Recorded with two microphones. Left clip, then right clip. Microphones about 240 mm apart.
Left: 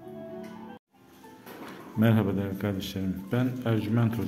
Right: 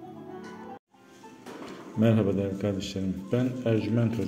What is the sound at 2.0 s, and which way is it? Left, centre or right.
A man's voice, centre.